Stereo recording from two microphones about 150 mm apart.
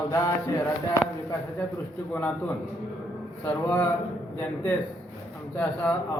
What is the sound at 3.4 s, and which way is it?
Speech, 10° left (ahead or behind).